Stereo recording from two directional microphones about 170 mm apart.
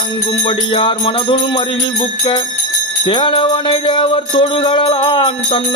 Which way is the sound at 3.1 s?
30° left (ahead or behind).